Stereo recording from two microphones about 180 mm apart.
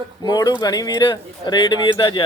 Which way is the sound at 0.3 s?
20° left (ahead or behind).